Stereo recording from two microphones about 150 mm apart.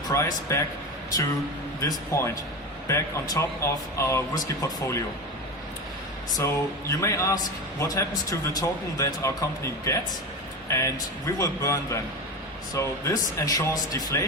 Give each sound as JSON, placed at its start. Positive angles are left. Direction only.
{"t": 0.1, "sound": "speech", "side_deg": 20}
{"t": 1.8, "sound": "speech", "side_deg": 20}
{"t": 6.3, "sound": "speech", "side_deg": 20}